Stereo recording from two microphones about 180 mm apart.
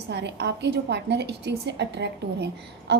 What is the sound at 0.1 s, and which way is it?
A woman's voice, 70° right (ahead or behind).